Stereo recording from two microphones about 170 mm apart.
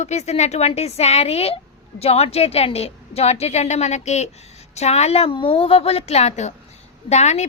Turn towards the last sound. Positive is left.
turn(degrees=40)  # may be behind; listen again after turning